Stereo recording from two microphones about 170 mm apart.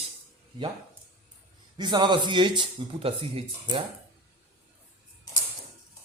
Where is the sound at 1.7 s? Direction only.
25° right (ahead or behind).